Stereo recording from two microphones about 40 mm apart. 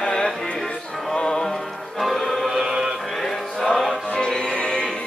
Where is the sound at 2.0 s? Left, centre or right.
Centre.